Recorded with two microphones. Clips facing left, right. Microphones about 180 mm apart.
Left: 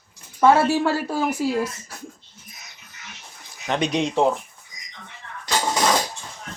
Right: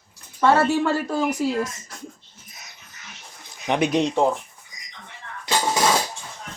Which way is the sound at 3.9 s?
Centre (ahead or behind).